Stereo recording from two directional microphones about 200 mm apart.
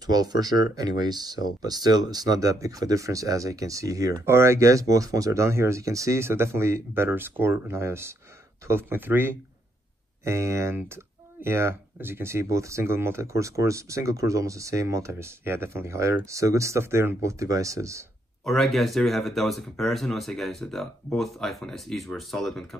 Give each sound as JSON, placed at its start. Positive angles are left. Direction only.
{"t": 0.0, "sound": "speech", "side_deg": -20}
{"t": 18.4, "sound": "speech", "side_deg": 0}